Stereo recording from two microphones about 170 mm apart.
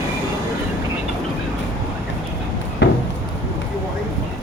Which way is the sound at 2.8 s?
90° left.